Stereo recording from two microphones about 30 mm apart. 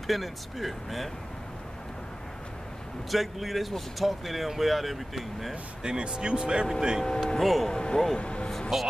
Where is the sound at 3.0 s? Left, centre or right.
Centre.